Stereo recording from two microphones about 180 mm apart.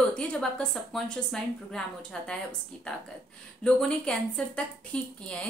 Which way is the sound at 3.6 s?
5° left (ahead or behind).